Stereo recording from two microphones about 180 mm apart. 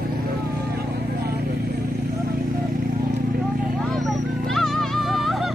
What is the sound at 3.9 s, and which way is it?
Music, centre (ahead or behind).